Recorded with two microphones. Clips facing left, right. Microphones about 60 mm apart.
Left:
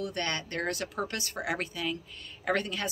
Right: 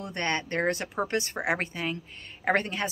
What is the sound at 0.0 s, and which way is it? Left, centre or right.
A woman's voice, right.